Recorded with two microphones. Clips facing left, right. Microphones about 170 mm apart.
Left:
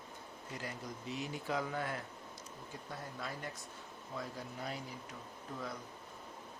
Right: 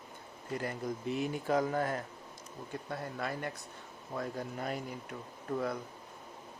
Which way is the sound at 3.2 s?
65° right (ahead or behind).